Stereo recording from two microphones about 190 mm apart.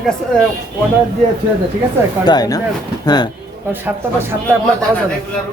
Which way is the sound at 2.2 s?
20° left (ahead or behind).